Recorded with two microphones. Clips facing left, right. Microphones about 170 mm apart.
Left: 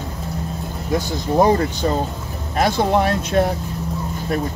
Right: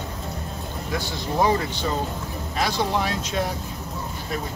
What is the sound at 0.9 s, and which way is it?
Speech, 45° left (ahead or behind).